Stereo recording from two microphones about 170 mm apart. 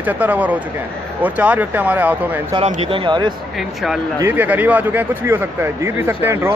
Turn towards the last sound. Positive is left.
turn(degrees=-15)  # may be behind; listen again after turning